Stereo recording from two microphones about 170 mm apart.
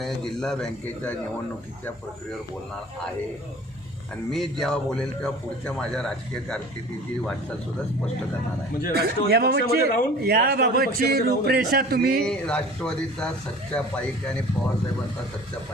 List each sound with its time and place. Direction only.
0.0 s a man's voice: 5° left (ahead or behind)
4.3 s a man's voice: centre (ahead or behind)
8.9 s a man's voice: 65° right (ahead or behind)
12.2 s a man's voice: 5° left (ahead or behind)